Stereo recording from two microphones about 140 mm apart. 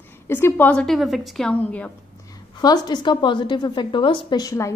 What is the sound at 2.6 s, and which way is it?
A woman's voice, 30° left (ahead or behind).